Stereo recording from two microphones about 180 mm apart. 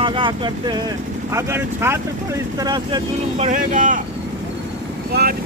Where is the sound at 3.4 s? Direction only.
45° right (ahead or behind).